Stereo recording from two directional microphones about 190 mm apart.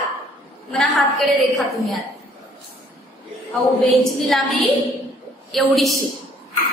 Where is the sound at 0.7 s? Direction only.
Centre (ahead or behind).